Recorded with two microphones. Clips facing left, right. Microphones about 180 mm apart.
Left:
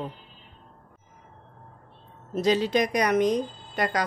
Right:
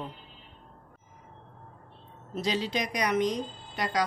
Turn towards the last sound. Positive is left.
turn(degrees=50)  # may be behind; listen again after turning